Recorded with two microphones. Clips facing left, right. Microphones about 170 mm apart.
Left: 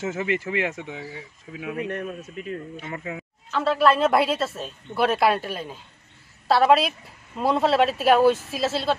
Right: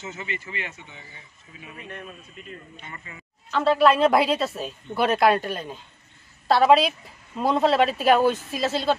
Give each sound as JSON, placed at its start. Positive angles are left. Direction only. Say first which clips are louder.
{"t": 0.0, "sound": "speech", "louder": "left 9 dB", "side_deg": 90}
{"t": 2.2, "sound": "speech", "louder": "left 9 dB", "side_deg": 75}
{"t": 3.5, "sound": "a woman's voice", "louder": "right 1 dB", "side_deg": 0}